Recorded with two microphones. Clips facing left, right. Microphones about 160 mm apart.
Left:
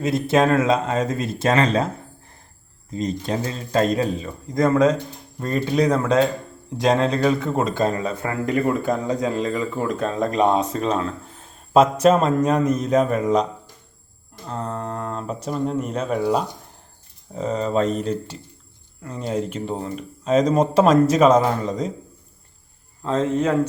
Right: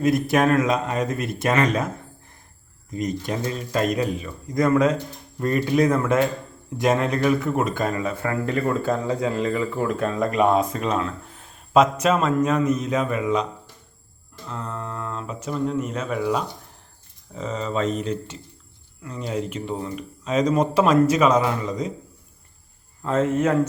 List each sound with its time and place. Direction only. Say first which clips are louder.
0.0 s a man's voice: left 1 dB; 25° left (ahead or behind)
2.9 s a man's voice: left 2 dB; 25° left (ahead or behind)
23.0 s speech: even; 30° left (ahead or behind)